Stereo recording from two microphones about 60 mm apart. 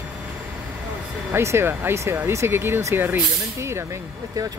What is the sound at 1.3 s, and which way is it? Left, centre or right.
Speech, right.